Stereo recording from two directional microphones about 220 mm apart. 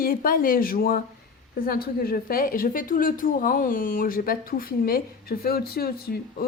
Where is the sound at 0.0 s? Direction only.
40° left (ahead or behind).